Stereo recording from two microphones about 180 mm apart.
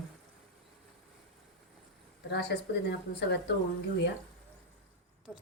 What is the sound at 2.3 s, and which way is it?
Speech, 65° left (ahead or behind).